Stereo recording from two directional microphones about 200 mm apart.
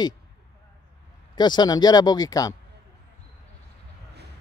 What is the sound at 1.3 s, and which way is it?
Speech, 20° left (ahead or behind).